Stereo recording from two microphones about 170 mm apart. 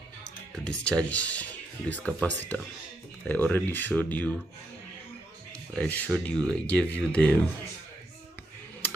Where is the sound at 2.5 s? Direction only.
10° left (ahead or behind).